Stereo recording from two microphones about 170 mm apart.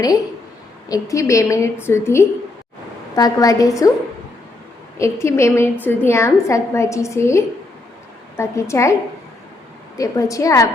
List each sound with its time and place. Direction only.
0.9 s a woman's voice: 20° left (ahead or behind)
4.9 s a woman's voice: 15° left (ahead or behind)
10.0 s a woman's voice: 20° left (ahead or behind)